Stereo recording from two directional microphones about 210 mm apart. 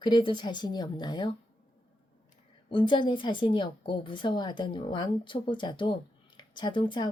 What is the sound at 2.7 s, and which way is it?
A woman's voice, 20° left (ahead or behind).